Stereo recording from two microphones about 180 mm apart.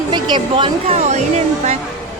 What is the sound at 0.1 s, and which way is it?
Speech, 25° right (ahead or behind).